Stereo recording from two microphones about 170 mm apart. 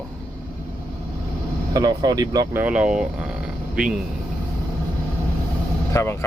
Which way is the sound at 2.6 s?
5° right (ahead or behind).